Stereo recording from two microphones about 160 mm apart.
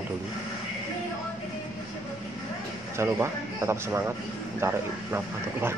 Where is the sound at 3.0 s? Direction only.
15° right (ahead or behind).